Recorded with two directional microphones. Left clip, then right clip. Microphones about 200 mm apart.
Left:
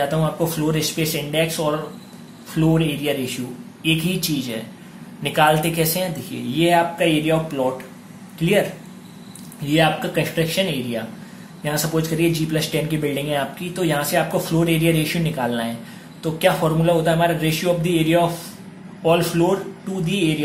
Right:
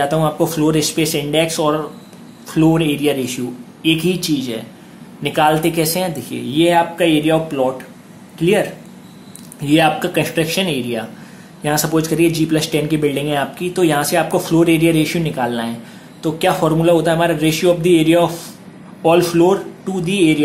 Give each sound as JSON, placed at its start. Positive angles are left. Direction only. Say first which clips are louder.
{"t": 0.0, "sound": "a man's voice", "louder": "right 5 dB", "side_deg": -20}
{"t": 9.7, "sound": "a man's voice", "louder": "right 4 dB", "side_deg": -20}